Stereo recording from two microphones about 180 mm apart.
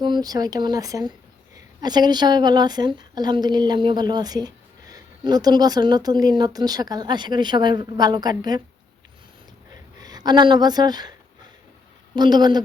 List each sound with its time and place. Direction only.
0.0 s a woman's voice: 20° right (ahead or behind)
10.0 s a woman's voice: 20° right (ahead or behind)
12.1 s a woman's voice: 25° right (ahead or behind)